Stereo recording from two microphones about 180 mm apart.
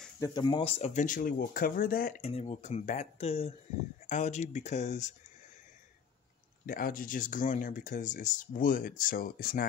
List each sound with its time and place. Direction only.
0.2 s speech: 25° left (ahead or behind); by 2.2 s 55° left (ahead or behind)
2.2 s speech: 35° left (ahead or behind)
6.6 s speech: 50° left (ahead or behind)